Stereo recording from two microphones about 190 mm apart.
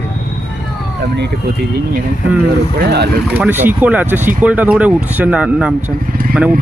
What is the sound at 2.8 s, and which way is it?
Speech, 55° right (ahead or behind).